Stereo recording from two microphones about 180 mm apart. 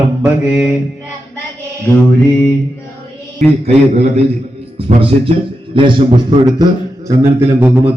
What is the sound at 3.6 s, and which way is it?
A man's voice, 35° right (ahead or behind).